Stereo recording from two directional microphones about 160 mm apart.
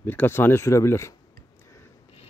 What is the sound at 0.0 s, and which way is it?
Speech, 10° left (ahead or behind).